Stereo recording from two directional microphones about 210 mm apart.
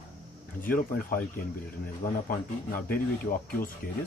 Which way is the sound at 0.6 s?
45° left (ahead or behind).